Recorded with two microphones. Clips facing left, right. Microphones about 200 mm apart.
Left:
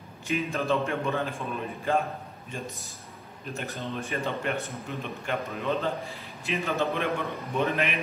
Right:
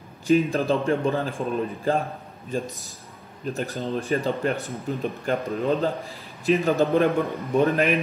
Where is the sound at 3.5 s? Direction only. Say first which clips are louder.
Right 5 dB; 30° right (ahead or behind).